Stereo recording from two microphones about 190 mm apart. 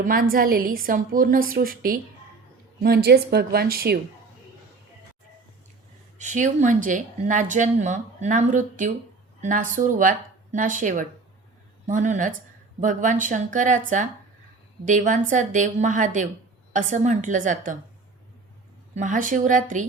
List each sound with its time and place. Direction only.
0.0 s a woman's voice: 50° right (ahead or behind)
6.1 s a woman's voice: 40° right (ahead or behind)
18.9 s a woman's voice: 40° right (ahead or behind)